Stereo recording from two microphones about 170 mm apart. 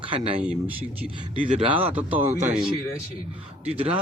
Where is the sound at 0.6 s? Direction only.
10° right (ahead or behind).